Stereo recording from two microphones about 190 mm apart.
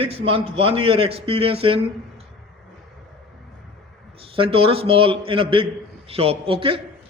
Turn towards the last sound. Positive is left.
turn(degrees=-30)  # may be behind; listen again after turning